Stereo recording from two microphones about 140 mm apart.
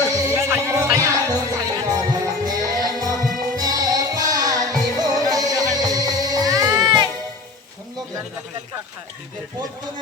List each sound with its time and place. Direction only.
0.1 s music: 25° right (ahead or behind)